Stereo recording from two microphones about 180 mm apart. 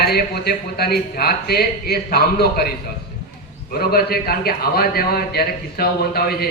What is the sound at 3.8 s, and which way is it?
A man's voice, 60° left (ahead or behind).